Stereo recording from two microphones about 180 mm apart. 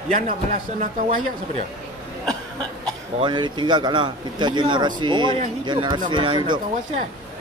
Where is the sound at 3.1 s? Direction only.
25° right (ahead or behind).